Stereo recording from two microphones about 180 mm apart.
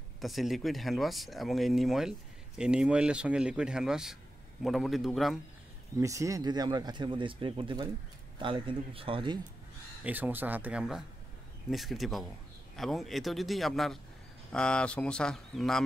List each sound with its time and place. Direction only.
0.2 s speech: centre (ahead or behind)
5.9 s speech: 15° right (ahead or behind)
10.0 s speech: 10° right (ahead or behind)